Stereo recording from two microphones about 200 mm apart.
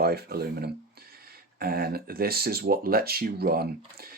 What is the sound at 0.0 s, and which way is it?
Speech, 50° right (ahead or behind).